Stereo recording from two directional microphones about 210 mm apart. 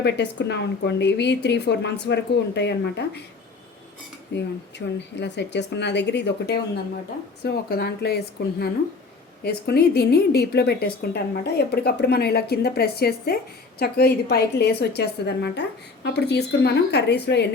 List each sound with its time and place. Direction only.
0.0 s speech: 55° left (ahead or behind)
4.3 s speech: 55° left (ahead or behind)